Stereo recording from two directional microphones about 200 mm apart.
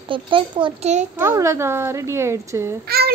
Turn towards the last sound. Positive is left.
turn(degrees=-50)  # may be behind; listen again after turning